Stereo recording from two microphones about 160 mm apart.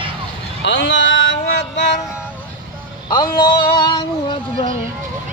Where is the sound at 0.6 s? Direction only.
90° left.